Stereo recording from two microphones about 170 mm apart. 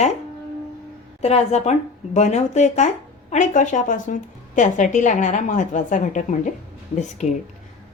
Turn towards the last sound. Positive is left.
turn(degrees=45)  # may be behind; listen again after turning